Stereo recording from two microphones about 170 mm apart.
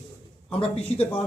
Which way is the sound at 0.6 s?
35° left (ahead or behind).